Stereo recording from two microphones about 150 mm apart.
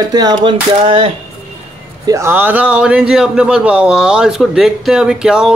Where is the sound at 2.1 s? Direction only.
15° right (ahead or behind).